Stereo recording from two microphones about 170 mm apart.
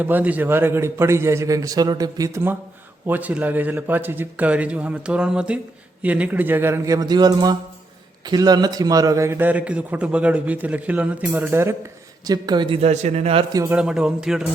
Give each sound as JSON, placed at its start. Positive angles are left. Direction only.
{"t": 0.0, "sound": "a man's voice", "side_deg": -10}
{"t": 13.5, "sound": "a man's voice", "side_deg": -20}
{"t": 13.7, "sound": "speech", "side_deg": -5}